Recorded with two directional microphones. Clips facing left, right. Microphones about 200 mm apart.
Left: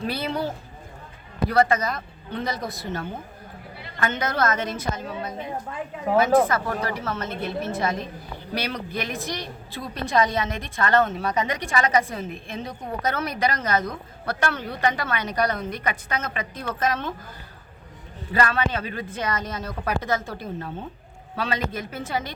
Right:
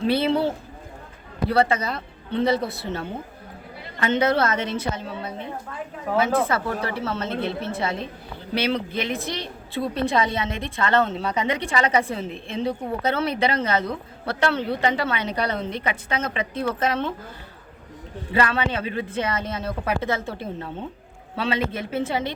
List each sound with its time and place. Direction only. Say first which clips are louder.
0.1 s a woman's voice: right 9 dB; 25° right (ahead or behind)
6.5 s a woman's voice: right 1 dB; 30° right (ahead or behind)
18.5 s a woman's voice: right 1 dB; 25° right (ahead or behind)